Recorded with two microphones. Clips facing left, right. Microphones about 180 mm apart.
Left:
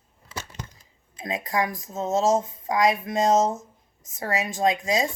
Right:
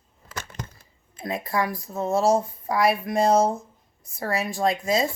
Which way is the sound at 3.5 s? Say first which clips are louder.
Right 2 dB; 40° left (ahead or behind).